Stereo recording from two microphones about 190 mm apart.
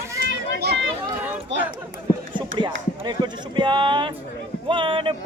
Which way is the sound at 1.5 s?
70° right (ahead or behind).